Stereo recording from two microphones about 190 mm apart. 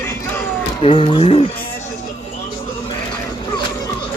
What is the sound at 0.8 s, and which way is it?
Speech, 30° left (ahead or behind).